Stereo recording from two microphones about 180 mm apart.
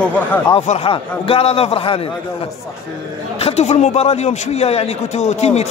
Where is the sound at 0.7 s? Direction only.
30° left (ahead or behind).